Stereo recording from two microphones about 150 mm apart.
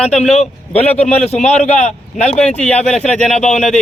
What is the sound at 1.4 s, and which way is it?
Speech, 45° left (ahead or behind).